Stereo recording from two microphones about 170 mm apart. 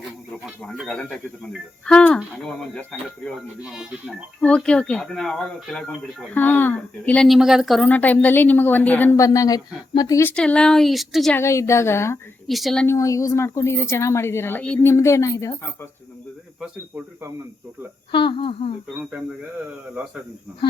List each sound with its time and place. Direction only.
0.6 s speech: centre (ahead or behind)
4.4 s a woman's voice: 5° left (ahead or behind)
10.3 s speech: 5° left (ahead or behind)
11.3 s a woman's voice: 15° left (ahead or behind)
12.5 s speech: centre (ahead or behind)
12.9 s a woman's voice: 20° left (ahead or behind)
18.1 s speech: 30° left (ahead or behind)